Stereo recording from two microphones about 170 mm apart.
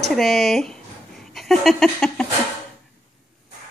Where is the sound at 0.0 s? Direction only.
Centre (ahead or behind).